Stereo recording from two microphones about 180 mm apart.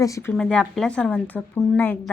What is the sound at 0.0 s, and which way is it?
Speech, 15° left (ahead or behind).